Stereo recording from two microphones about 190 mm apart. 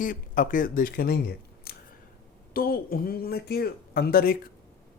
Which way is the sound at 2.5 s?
50° left (ahead or behind).